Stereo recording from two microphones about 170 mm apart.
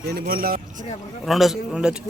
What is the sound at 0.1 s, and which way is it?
Speech, 60° right (ahead or behind).